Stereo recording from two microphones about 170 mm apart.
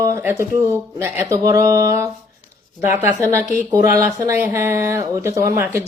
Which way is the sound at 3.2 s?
15° right (ahead or behind).